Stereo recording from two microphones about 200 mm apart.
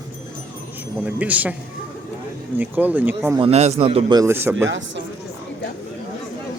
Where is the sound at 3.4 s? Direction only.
35° right (ahead or behind); by 4.7 s 10° right (ahead or behind).